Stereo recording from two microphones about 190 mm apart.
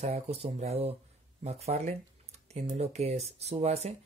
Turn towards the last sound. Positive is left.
turn(degrees=-35)  # may be behind; listen again after turning